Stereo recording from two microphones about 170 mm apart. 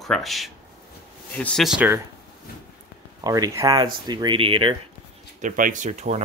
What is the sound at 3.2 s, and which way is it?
Speech, 20° right (ahead or behind).